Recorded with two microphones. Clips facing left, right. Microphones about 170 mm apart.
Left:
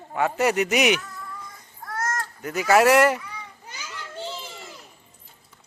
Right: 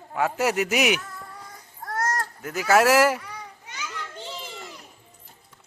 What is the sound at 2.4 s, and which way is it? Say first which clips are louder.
Speech: left 2 dB; centre (ahead or behind).